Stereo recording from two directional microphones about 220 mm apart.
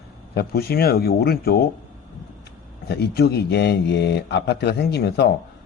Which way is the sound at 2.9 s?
50° left (ahead or behind).